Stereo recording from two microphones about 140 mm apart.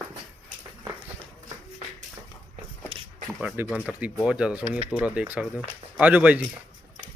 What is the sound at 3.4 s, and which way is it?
Speech, 10° right (ahead or behind).